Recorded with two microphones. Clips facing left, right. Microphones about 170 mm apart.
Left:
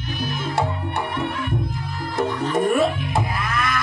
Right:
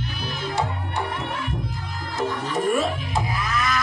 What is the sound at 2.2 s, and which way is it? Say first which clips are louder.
Music: left 4 dB; 55° left (ahead or behind).